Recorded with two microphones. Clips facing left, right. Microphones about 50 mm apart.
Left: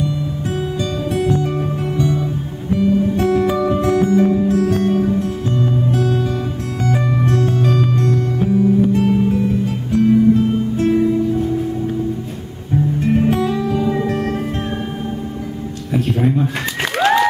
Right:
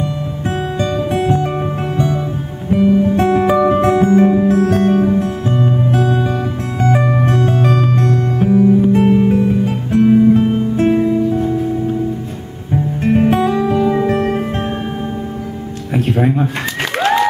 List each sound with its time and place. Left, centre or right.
0.7 s music: right
8.5 s music: right
13.0 s music: right
15.9 s music: right
17.0 s a sound: centre